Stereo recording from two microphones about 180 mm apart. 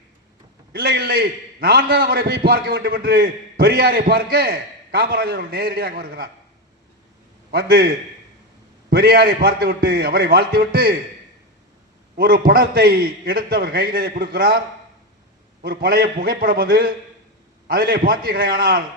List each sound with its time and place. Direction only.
0.7 s a man's voice: 60° right (ahead or behind)
7.5 s a man's voice: 60° right (ahead or behind)
8.9 s a man's voice: 60° right (ahead or behind)
12.1 s a man's voice: 60° right (ahead or behind)
15.6 s a man's voice: 60° right (ahead or behind)